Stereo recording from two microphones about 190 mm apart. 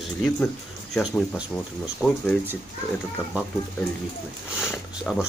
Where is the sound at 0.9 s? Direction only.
Centre (ahead or behind).